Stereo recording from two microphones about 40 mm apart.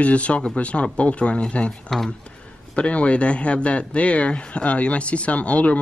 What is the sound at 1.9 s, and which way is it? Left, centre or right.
Speech, centre.